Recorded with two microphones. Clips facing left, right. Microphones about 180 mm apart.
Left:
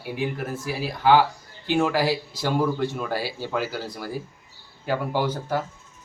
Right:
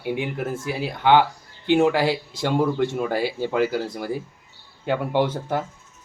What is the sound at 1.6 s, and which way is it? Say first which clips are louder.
Speech: right 4 dB; 20° right (ahead or behind).